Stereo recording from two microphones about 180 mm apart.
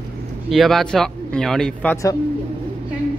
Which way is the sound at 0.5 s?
Centre (ahead or behind).